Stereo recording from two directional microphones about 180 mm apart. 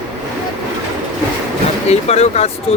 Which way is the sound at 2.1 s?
35° left (ahead or behind).